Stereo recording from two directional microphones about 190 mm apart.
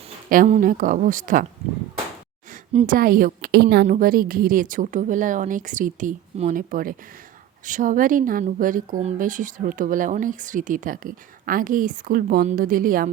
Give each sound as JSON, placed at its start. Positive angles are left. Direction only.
{"t": 0.3, "sound": "a woman's voice", "side_deg": -40}
{"t": 2.8, "sound": "a woman's voice", "side_deg": -45}
{"t": 3.8, "sound": "a woman's voice", "side_deg": -45}